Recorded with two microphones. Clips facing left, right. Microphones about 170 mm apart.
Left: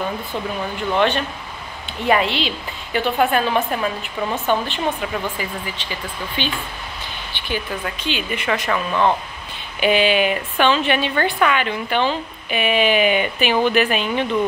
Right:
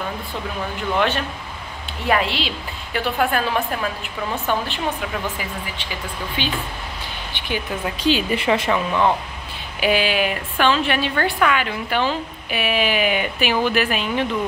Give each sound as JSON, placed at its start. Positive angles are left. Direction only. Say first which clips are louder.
{"t": 0.9, "sound": "a woman's voice", "louder": "left 3 dB", "side_deg": -5}
{"t": 6.4, "sound": "speech", "louder": "even", "side_deg": -10}
{"t": 8.0, "sound": "a woman's voice", "louder": "right 6 dB", "side_deg": -35}
{"t": 8.5, "sound": "speech", "louder": "right 1 dB", "side_deg": -20}
{"t": 9.8, "sound": "a woman's voice", "louder": "left 3 dB", "side_deg": -5}